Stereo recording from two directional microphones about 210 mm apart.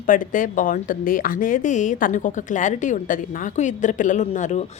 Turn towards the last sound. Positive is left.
turn(degrees=35)  # may be behind; listen again after turning